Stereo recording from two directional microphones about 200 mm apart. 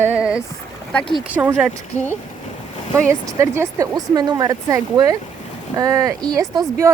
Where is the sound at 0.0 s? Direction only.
5° right (ahead or behind).